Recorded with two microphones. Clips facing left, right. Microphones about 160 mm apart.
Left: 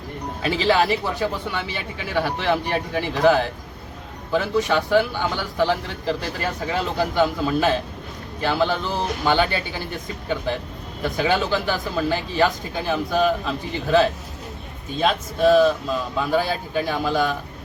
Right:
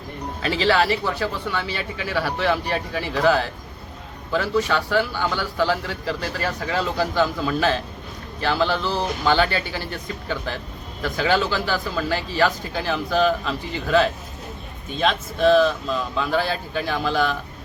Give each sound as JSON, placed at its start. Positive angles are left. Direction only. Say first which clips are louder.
{"t": 0.4, "sound": "a man's voice", "louder": "even", "side_deg": 20}
{"t": 11.0, "sound": "speech", "louder": "even", "side_deg": 15}
{"t": 15.0, "sound": "speech", "louder": "left 1 dB", "side_deg": 10}